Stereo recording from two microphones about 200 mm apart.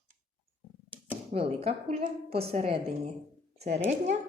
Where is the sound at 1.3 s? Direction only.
30° right (ahead or behind).